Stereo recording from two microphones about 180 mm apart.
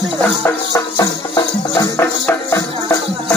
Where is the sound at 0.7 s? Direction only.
15° left (ahead or behind).